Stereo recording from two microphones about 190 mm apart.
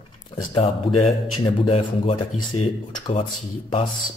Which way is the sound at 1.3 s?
30° left (ahead or behind).